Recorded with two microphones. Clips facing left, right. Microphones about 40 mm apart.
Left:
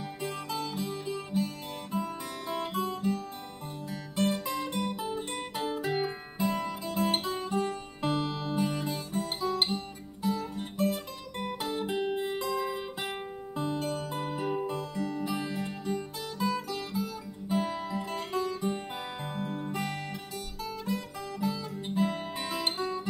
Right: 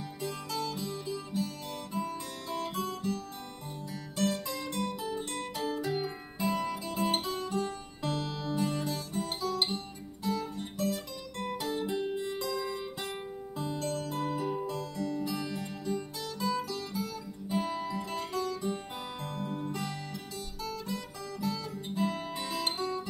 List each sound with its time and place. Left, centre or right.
0.2 s music: centre
0.8 s music: left
4.2 s music: centre
5.9 s music: left
6.3 s guitar: centre
7.3 s music: centre
9.4 s guitar: centre
12.4 s music: left
16.4 s music: centre
20.6 s guitar: centre
22.8 s music: centre